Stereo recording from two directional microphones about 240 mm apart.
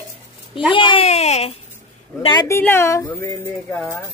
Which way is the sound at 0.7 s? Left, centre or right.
Left.